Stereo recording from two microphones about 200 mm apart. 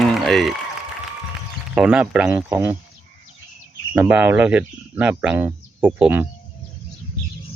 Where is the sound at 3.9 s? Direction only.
10° right (ahead or behind).